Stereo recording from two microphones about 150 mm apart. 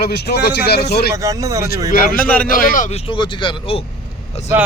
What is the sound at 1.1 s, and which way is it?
Speech, 20° right (ahead or behind).